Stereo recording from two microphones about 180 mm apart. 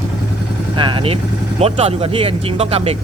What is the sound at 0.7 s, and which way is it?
Speech, 25° right (ahead or behind).